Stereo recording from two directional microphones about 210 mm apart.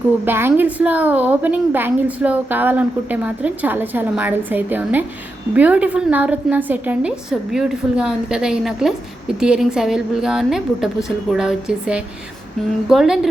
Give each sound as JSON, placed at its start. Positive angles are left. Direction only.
{"t": 0.3, "sound": "a woman's voice", "side_deg": -10}